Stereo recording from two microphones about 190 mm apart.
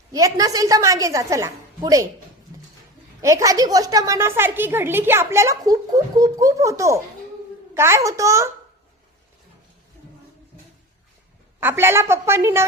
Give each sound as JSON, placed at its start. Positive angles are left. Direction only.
{"t": 0.1, "sound": "a woman's voice", "side_deg": -15}
{"t": 3.2, "sound": "a woman's voice", "side_deg": -15}
{"t": 11.6, "sound": "a woman's voice", "side_deg": -10}